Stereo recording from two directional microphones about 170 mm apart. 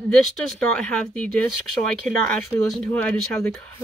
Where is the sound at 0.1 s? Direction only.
Centre (ahead or behind).